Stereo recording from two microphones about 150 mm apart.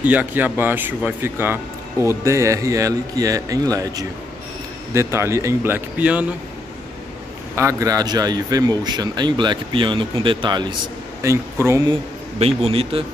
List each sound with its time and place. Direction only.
0.0 s a man's voice: 10° right (ahead or behind)
7.5 s a man's voice: 20° right (ahead or behind)
11.2 s a man's voice: 20° right (ahead or behind)
12.4 s a man's voice: 40° right (ahead or behind)